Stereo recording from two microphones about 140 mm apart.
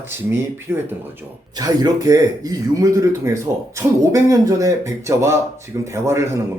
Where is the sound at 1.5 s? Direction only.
25° right (ahead or behind).